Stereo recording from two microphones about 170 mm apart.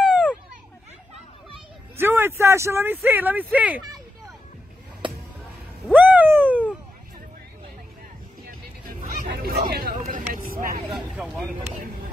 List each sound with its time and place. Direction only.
0.0 s children playing: 5° left (ahead or behind)
2.0 s speech: 15° right (ahead or behind)
5.9 s cat: 10° right (ahead or behind)
8.5 s a sound: 55° right (ahead or behind)
10.1 s vehicle: 55° right (ahead or behind)
10.9 s vehicle: centre (ahead or behind)